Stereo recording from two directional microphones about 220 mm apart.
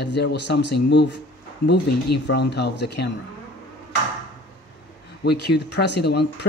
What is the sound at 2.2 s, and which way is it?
Speech, 50° left (ahead or behind).